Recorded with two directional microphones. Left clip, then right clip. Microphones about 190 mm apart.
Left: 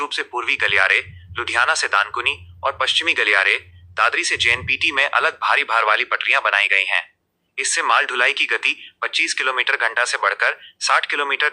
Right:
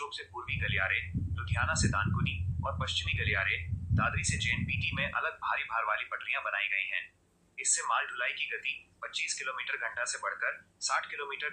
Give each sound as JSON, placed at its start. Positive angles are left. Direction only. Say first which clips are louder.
{"t": 0.0, "sound": "speech", "louder": "left 17 dB", "side_deg": 40}